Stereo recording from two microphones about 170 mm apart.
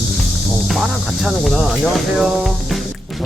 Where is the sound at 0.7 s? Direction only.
Centre (ahead or behind).